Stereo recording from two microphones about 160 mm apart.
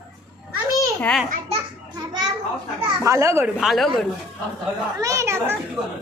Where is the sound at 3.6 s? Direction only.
Centre (ahead or behind).